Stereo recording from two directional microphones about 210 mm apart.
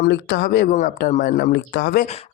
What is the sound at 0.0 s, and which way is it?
Speech, 50° left (ahead or behind).